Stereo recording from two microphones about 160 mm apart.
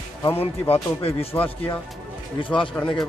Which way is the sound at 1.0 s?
35° left (ahead or behind).